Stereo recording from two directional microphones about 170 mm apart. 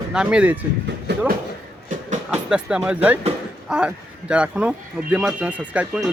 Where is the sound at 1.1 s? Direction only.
80° right.